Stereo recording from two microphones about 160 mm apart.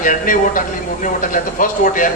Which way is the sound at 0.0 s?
55° left (ahead or behind).